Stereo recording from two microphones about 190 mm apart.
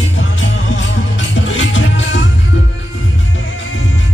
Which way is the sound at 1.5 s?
80° left.